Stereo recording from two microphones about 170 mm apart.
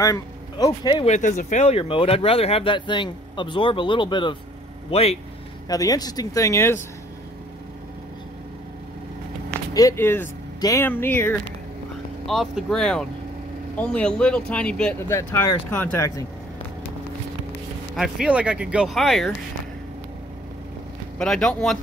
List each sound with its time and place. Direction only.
0.0 s speech: 20° left (ahead or behind)
1.0 s speech: 45° left (ahead or behind)
5.7 s speech: 20° left (ahead or behind)
9.8 s speech: 15° left (ahead or behind)
12.3 s speech: centre (ahead or behind); by 16.3 s 15° left (ahead or behind)
17.9 s speech: centre (ahead or behind)
21.2 s speech: 5° left (ahead or behind)